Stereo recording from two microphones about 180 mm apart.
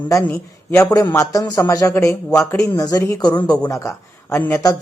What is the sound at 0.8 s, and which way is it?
Speech, 20° left (ahead or behind).